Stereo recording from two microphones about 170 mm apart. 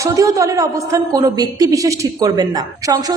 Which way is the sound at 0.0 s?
20° right (ahead or behind).